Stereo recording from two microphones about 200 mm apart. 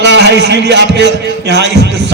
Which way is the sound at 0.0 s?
60° right (ahead or behind).